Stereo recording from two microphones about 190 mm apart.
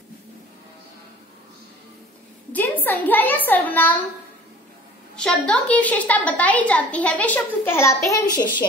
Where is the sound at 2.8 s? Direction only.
10° left (ahead or behind).